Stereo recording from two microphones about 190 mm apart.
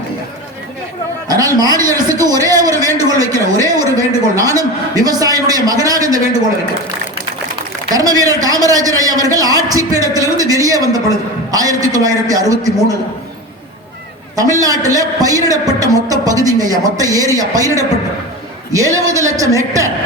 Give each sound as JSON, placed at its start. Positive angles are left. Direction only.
{"t": 1.3, "sound": "a sound", "side_deg": -20}
{"t": 7.9, "sound": "a woman's voice", "side_deg": -20}
{"t": 14.6, "sound": "a woman's voice", "side_deg": -20}